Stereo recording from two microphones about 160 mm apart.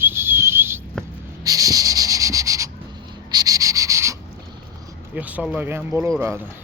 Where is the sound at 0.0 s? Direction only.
15° right (ahead or behind).